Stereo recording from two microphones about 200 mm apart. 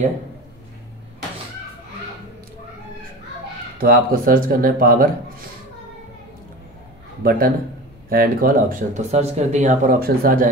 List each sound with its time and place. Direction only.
3.7 s speech: 45° right (ahead or behind)
7.2 s speech: 45° right (ahead or behind)